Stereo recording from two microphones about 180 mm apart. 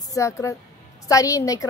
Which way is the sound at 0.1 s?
15° left (ahead or behind).